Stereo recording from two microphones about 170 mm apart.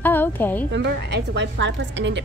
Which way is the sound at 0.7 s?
90° right.